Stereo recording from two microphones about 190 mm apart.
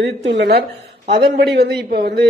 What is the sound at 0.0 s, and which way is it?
A man's voice, 60° right (ahead or behind).